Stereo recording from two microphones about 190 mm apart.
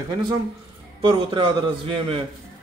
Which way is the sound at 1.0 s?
25° right (ahead or behind).